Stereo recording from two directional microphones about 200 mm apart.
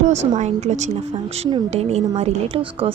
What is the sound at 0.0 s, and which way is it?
A woman's voice, 35° right (ahead or behind).